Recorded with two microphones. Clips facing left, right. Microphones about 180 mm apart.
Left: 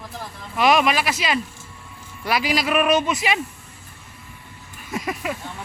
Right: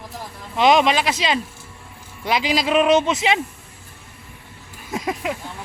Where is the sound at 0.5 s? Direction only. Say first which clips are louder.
Right 2 dB; 25° right (ahead or behind).